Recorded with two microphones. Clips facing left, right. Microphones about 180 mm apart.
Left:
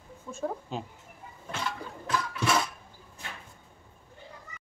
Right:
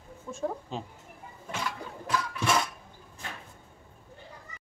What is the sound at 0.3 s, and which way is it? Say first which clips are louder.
Speech: even; centre (ahead or behind).